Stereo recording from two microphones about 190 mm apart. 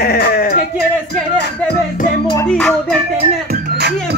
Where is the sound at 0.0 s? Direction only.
55° left (ahead or behind).